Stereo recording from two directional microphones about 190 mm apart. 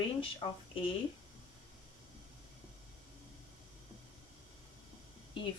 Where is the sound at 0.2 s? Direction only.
25° left (ahead or behind).